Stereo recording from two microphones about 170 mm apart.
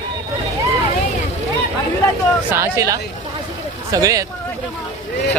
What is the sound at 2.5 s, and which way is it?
Speech, 15° right (ahead or behind).